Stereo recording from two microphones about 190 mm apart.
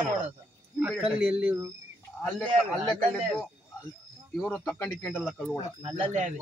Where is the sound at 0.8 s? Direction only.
5° right (ahead or behind).